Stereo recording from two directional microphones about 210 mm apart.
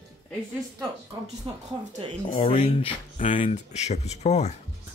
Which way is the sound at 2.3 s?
25° left (ahead or behind).